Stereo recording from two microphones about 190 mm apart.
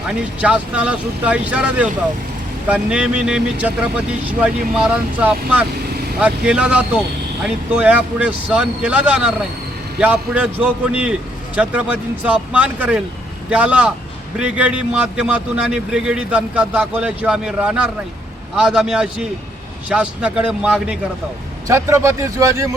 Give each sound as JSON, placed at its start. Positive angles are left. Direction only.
{"t": 0.4, "sound": "a man's voice", "side_deg": -5}
{"t": 21.7, "sound": "speech", "side_deg": -15}